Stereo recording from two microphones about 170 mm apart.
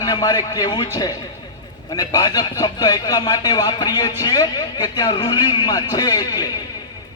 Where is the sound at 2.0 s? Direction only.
20° left (ahead or behind).